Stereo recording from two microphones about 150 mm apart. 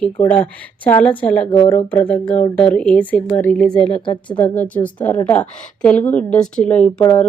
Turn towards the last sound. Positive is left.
turn(degrees=10)  # may be behind; listen again after turning